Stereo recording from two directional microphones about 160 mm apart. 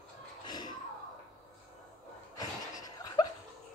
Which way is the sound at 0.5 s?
25° left (ahead or behind).